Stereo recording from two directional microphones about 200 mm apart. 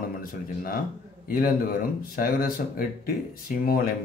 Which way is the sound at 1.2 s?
45° left (ahead or behind).